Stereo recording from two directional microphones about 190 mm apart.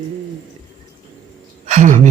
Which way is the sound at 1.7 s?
40° right (ahead or behind).